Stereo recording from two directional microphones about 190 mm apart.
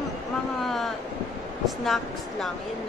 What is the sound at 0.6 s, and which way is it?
Speech, centre (ahead or behind).